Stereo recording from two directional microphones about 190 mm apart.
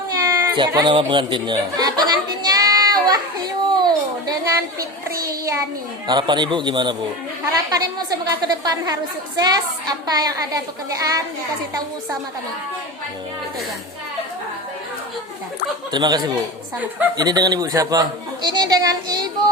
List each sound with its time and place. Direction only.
0.2 s baby cry: 15° right (ahead or behind)
0.7 s a woman's voice: 25° right (ahead or behind)
2.5 s a sound: 20° right (ahead or behind)
5.2 s a child's voice: 15° right (ahead or behind)
15.9 s a woman's voice: 20° right (ahead or behind)
18.4 s a sound: 20° right (ahead or behind)